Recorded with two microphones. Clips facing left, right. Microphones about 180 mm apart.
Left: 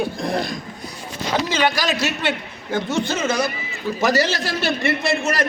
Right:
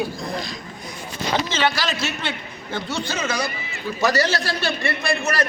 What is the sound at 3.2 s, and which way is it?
Speech, 20° left (ahead or behind).